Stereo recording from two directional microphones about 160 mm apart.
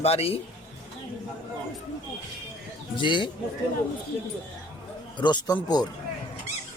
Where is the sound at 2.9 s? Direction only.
30° left (ahead or behind).